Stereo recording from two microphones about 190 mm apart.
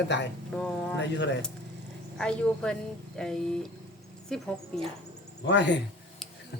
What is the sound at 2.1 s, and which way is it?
A woman's voice, 5° left (ahead or behind).